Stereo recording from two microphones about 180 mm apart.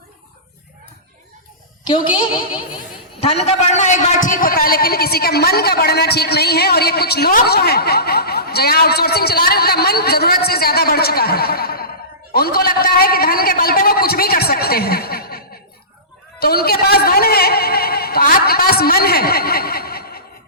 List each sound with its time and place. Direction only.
1.8 s a woman's voice: 25° left (ahead or behind); by 20.2 s 60° left (ahead or behind)